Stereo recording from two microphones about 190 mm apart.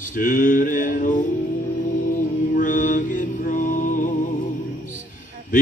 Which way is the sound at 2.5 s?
45° left (ahead or behind).